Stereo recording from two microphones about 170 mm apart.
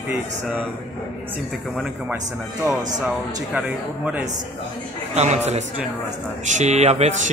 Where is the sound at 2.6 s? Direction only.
15° right (ahead or behind).